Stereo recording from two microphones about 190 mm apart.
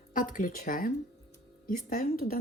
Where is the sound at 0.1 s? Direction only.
45° left (ahead or behind).